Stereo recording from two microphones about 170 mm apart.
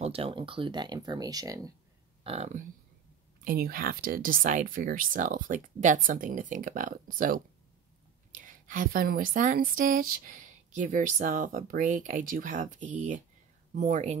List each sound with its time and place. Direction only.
0.0 s speech: 35° right (ahead or behind)
2.2 s speech: 40° right (ahead or behind)
3.4 s a woman's voice: 60° right (ahead or behind); by 14.1 s 45° right (ahead or behind)